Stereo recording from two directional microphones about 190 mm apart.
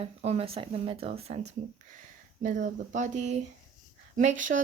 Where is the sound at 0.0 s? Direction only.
35° right (ahead or behind).